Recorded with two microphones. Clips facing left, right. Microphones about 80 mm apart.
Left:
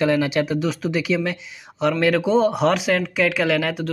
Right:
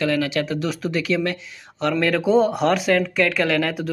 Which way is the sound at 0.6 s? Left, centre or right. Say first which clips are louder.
Left 1 dB; centre.